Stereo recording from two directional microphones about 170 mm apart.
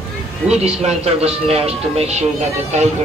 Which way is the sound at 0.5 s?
40° right (ahead or behind).